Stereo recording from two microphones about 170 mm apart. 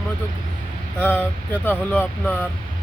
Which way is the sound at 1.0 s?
10° left (ahead or behind).